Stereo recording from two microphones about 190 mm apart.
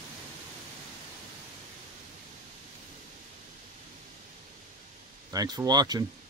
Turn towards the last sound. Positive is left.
turn(degrees=-20)  # may be behind; listen again after turning